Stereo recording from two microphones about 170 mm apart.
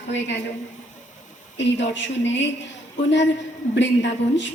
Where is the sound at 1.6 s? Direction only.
90° left.